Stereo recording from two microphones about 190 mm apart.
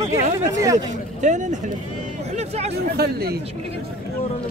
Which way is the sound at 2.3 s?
35° right (ahead or behind).